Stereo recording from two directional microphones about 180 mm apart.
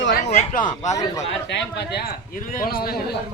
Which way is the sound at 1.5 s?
70° left (ahead or behind).